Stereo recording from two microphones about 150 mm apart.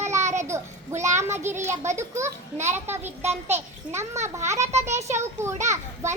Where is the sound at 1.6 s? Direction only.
50° right (ahead or behind).